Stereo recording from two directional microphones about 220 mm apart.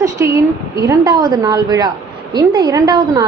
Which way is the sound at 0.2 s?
10° right (ahead or behind).